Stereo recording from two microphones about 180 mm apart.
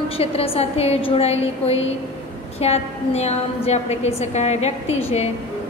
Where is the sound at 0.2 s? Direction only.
35° left (ahead or behind).